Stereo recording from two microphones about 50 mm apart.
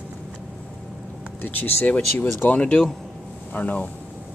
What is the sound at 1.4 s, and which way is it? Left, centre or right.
Speech, left.